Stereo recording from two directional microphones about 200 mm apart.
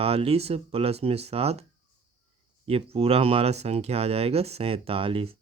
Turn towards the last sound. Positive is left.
turn(degrees=-25)  # may be behind; listen again after turning